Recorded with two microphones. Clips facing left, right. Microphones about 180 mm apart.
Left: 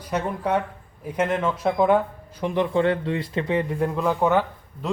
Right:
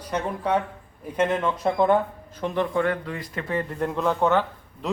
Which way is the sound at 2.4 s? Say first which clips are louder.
Left 2 dB; 20° left (ahead or behind).